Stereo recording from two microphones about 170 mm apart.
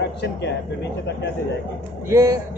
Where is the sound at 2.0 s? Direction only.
15° right (ahead or behind).